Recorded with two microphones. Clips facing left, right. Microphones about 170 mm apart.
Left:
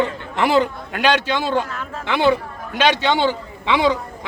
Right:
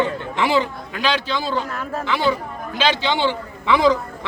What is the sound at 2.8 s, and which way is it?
Speech, 45° left (ahead or behind).